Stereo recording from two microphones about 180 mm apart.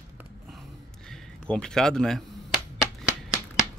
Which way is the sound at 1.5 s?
5° left (ahead or behind).